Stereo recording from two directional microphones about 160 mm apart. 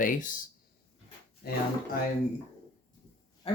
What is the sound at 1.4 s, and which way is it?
Speech, 75° left (ahead or behind).